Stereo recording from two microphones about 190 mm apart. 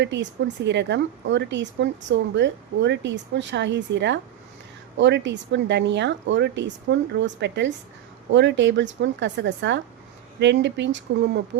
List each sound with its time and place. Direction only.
0.0 s speech: 70° right (ahead or behind)